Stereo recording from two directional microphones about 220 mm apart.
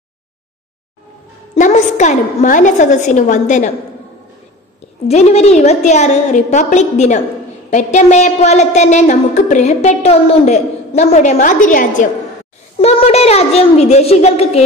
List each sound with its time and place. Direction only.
1.5 s a woman's voice: 35° left (ahead or behind)
5.0 s a woman's voice: 30° left (ahead or behind)